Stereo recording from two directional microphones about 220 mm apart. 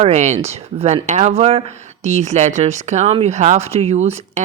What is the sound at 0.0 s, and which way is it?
Speech, 30° right (ahead or behind).